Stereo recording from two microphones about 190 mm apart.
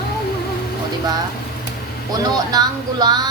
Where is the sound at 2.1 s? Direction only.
20° right (ahead or behind).